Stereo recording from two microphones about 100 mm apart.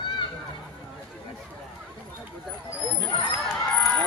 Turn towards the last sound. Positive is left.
turn(degrees=5)  # may be behind; listen again after turning